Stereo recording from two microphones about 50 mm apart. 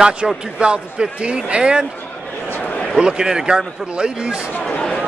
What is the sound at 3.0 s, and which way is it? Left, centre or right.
Speech, centre.